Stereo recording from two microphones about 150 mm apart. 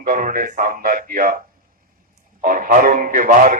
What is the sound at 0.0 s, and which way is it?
A man's voice, 65° right (ahead or behind).